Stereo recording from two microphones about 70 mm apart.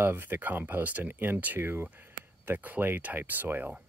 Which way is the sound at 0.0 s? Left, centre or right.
Right.